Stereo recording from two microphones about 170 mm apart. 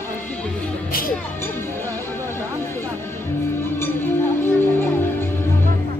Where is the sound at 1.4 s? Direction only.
15° left (ahead or behind).